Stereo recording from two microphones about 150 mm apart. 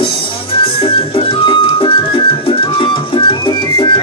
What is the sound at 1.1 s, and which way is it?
Music, 35° left (ahead or behind).